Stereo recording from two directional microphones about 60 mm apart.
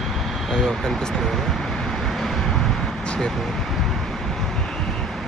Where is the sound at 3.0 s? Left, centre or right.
Centre.